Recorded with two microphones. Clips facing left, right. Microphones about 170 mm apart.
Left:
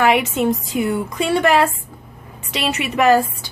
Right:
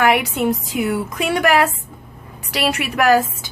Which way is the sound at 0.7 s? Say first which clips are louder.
Left 1 dB; 90° right.